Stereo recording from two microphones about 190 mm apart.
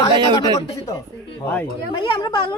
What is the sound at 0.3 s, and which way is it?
Speech, 20° left (ahead or behind).